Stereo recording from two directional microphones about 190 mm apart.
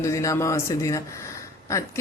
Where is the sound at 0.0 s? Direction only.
15° left (ahead or behind).